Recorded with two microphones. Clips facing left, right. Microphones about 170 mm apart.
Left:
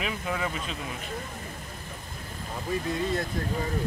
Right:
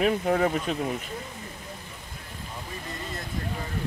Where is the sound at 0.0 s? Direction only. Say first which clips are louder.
Right 8 dB; 50° right (ahead or behind).